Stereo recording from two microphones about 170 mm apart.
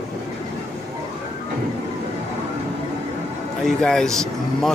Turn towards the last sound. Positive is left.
turn(degrees=5)  # may be behind; listen again after turning